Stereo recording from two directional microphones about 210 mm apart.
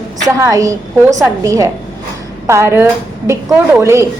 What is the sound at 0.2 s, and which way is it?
A woman's voice, 15° right (ahead or behind).